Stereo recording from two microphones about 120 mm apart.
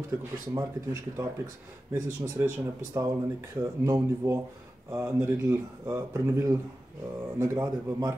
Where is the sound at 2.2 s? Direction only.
20° right (ahead or behind).